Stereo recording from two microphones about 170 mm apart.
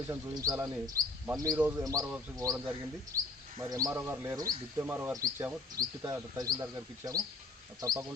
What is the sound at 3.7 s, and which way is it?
Speech, 20° right (ahead or behind).